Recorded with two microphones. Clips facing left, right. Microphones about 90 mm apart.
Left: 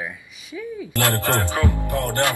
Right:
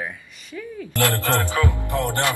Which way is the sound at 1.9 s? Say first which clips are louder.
Left 1 dB; 25° right (ahead or behind).